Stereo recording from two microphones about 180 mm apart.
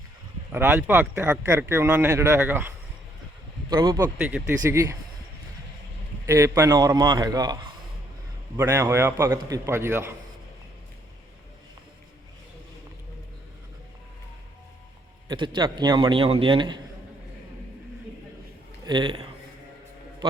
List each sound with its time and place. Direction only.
0.5 s speech: 15° right (ahead or behind)
3.7 s a man's voice: 25° right (ahead or behind)
6.2 s a man's voice: 15° right (ahead or behind)
15.3 s a man's voice: 25° right (ahead or behind)
18.9 s a man's voice: 25° right (ahead or behind)